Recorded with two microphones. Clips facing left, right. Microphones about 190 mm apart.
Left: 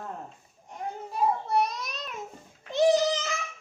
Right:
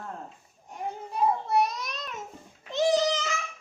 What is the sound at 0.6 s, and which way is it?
Babbling, centre (ahead or behind).